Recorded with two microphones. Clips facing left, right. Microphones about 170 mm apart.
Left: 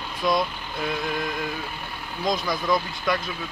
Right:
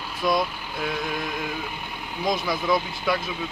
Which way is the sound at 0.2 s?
Centre (ahead or behind).